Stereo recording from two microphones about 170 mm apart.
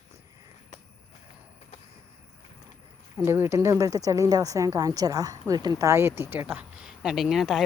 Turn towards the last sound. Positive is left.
turn(degrees=0)  # may be behind; listen again after turning